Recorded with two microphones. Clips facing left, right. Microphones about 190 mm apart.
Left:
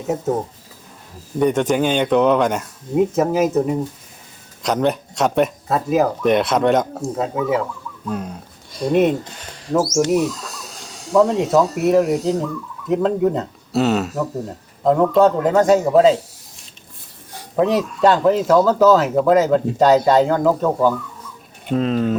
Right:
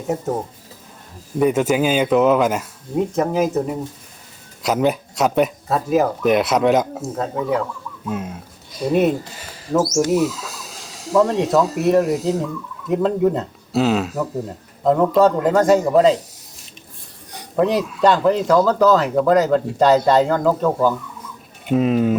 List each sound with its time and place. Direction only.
1.4 s speech: 5° right (ahead or behind)
17.6 s speech: centre (ahead or behind)
21.7 s speech: 10° right (ahead or behind)